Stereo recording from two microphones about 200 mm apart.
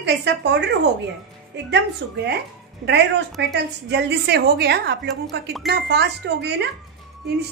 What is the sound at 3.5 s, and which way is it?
A woman's voice, 55° right (ahead or behind).